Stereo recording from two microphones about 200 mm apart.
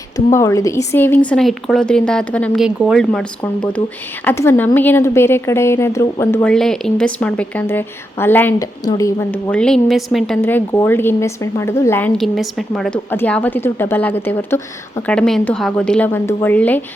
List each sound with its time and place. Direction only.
0.3 s a woman's voice: 15° left (ahead or behind)